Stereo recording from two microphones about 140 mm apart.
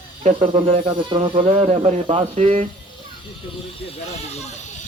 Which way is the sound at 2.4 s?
60° right (ahead or behind).